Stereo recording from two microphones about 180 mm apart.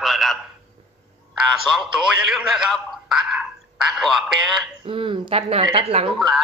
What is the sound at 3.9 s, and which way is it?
Speech, centre (ahead or behind).